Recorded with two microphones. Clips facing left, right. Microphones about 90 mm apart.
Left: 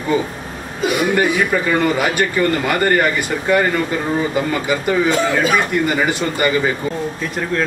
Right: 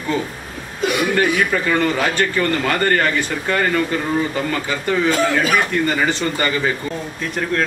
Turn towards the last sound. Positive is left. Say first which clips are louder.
# left 2 dB
turn(degrees=10)  # may be behind; listen again after turning